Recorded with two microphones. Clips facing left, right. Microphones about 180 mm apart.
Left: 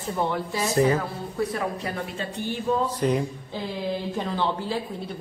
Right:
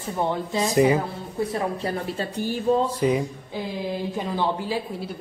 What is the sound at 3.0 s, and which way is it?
Speech, 5° right (ahead or behind).